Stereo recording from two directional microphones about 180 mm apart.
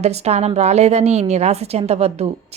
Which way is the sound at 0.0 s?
40° right (ahead or behind).